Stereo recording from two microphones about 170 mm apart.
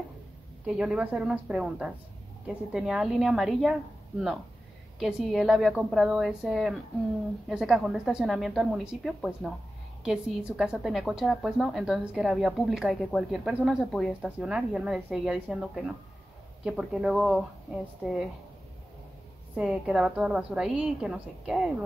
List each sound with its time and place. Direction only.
0.7 s a woman's voice: 5° right (ahead or behind)
4.9 s a woman's voice: centre (ahead or behind)
19.5 s a woman's voice: 5° right (ahead or behind)